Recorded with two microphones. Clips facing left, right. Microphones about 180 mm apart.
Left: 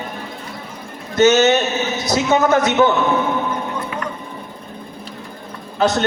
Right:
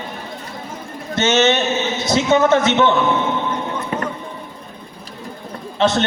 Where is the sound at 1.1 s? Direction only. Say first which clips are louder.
Left 3 dB; 25° right (ahead or behind).